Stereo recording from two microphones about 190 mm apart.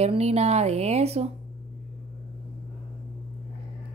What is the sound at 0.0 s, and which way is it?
A woman's voice, 35° right (ahead or behind).